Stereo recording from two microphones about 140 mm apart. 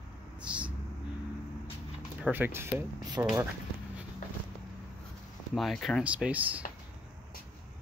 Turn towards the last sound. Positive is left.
turn(degrees=-10)  # may be behind; listen again after turning